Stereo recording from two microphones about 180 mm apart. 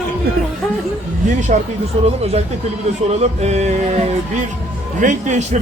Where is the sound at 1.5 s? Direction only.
45° right (ahead or behind).